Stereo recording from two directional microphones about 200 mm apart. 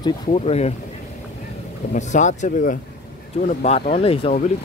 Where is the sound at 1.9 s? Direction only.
35° left (ahead or behind).